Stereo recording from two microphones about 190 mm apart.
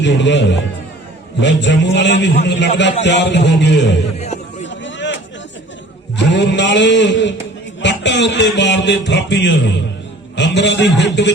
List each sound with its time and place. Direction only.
0.0 s music: 65° left (ahead or behind)
4.6 s a sound: 70° left (ahead or behind)
6.1 s music: 70° left (ahead or behind)
10.3 s a man's voice: 70° left (ahead or behind)